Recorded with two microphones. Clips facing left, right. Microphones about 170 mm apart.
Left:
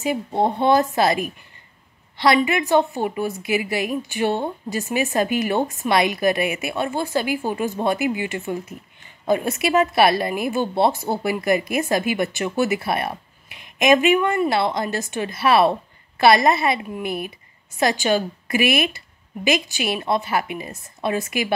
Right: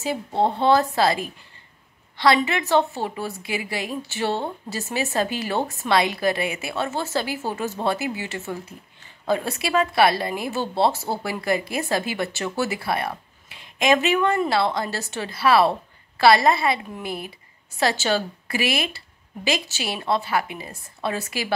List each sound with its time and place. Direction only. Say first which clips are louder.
0.0 s a woman's voice: left 2 dB; 15° left (ahead or behind)